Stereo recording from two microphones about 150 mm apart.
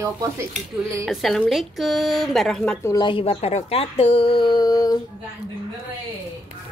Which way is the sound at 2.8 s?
25° left (ahead or behind).